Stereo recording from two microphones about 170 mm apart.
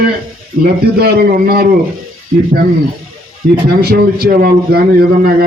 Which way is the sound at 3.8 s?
65° right (ahead or behind).